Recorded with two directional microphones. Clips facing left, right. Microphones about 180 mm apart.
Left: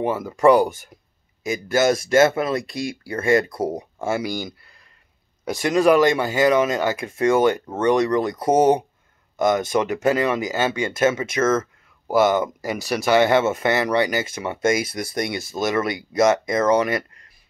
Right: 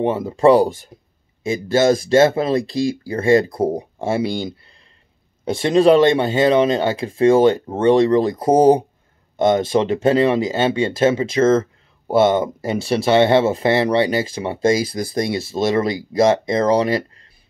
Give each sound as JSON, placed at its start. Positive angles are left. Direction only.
{"t": 0.0, "sound": "speech", "side_deg": -25}